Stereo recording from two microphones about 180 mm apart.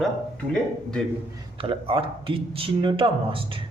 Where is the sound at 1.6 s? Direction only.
30° right (ahead or behind).